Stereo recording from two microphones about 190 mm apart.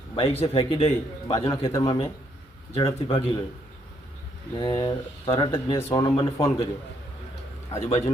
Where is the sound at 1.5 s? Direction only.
15° left (ahead or behind).